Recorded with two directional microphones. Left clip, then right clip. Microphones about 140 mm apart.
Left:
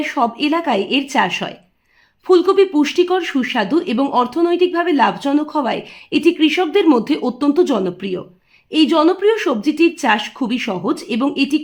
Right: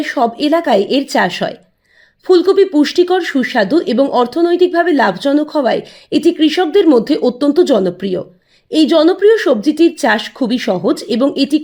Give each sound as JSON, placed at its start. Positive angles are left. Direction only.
{"t": 0.0, "sound": "speech", "side_deg": -25}
{"t": 2.2, "sound": "speech", "side_deg": -20}